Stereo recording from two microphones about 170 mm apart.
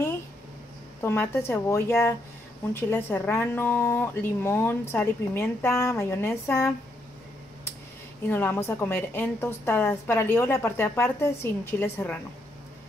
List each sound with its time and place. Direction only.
1.0 s speech: 15° left (ahead or behind)
8.3 s speech: 10° left (ahead or behind)